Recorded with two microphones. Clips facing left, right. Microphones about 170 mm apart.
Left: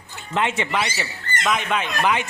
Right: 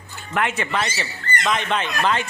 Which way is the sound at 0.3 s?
20° left (ahead or behind).